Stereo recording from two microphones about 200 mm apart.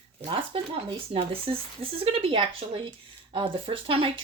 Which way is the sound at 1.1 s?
25° right (ahead or behind).